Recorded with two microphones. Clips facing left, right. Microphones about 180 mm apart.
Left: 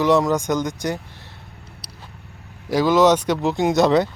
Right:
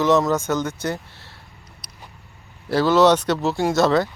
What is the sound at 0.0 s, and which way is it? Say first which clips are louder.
Speech: left 1 dB; 15° left (ahead or behind).